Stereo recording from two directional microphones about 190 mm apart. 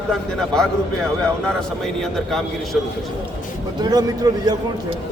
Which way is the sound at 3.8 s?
20° right (ahead or behind).